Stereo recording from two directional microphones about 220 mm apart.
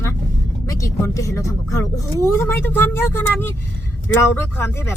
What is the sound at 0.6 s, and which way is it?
Speech, 15° left (ahead or behind).